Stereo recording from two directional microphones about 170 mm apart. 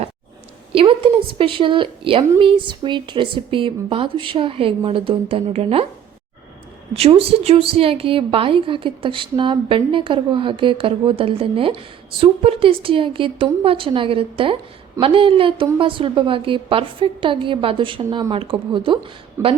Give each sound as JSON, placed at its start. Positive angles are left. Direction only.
{"t": 0.7, "sound": "a woman's voice", "side_deg": -30}
{"t": 6.9, "sound": "a woman's voice", "side_deg": -35}
{"t": 19.4, "sound": "speech", "side_deg": -15}